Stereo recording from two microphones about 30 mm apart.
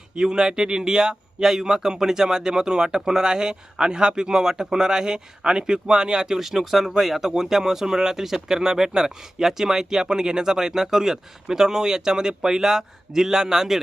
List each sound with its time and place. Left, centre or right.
0.2 s speech: right
6.4 s speech: centre